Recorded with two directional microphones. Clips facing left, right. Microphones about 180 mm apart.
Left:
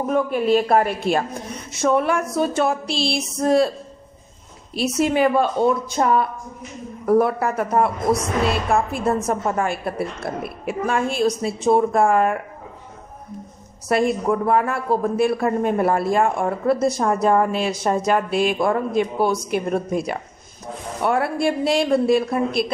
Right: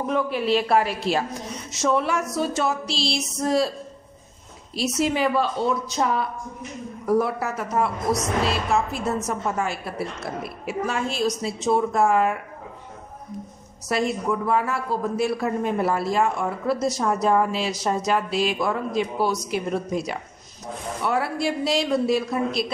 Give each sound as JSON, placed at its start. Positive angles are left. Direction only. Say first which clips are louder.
{"t": 0.0, "sound": "a woman's voice", "louder": "left 4 dB", "side_deg": 50}
{"t": 4.7, "sound": "a woman's voice", "louder": "left 4 dB", "side_deg": 55}
{"t": 13.8, "sound": "speech", "louder": "left 5 dB", "side_deg": 55}